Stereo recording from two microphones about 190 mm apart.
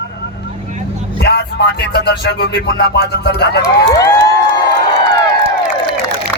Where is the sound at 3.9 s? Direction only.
20° left (ahead or behind).